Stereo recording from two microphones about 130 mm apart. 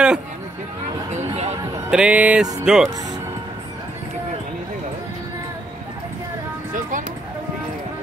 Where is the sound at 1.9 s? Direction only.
10° right (ahead or behind).